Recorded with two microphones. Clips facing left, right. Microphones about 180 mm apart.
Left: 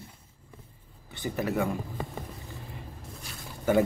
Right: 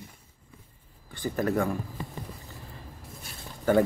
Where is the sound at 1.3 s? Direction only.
5° left (ahead or behind).